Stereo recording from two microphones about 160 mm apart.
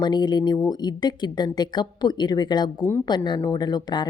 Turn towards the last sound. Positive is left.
turn(degrees=25)  # may be behind; listen again after turning